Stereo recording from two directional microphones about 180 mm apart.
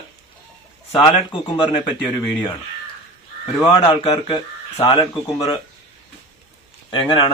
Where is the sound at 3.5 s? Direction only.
20° left (ahead or behind).